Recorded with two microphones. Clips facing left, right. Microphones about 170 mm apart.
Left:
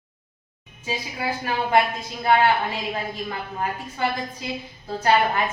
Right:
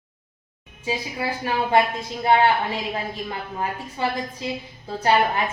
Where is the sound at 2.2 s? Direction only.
25° right (ahead or behind).